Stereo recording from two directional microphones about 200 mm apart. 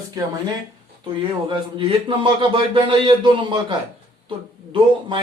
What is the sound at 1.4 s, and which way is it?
Speech, 25° right (ahead or behind).